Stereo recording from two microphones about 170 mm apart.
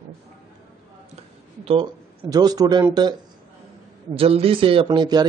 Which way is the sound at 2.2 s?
20° right (ahead or behind).